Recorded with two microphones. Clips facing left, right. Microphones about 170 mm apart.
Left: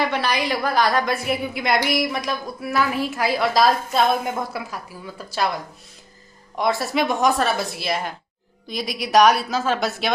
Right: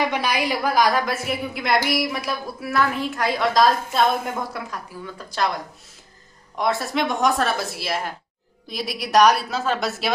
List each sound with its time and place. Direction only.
0.0 s a woman's voice: 15° right (ahead or behind); by 5.5 s 5° left (ahead or behind)
6.6 s a woman's voice: centre (ahead or behind)